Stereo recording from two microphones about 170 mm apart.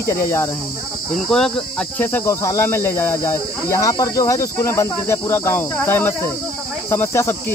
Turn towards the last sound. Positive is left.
turn(degrees=15)  # may be behind; listen again after turning